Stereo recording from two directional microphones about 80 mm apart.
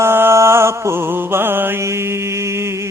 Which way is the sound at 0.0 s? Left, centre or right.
Right.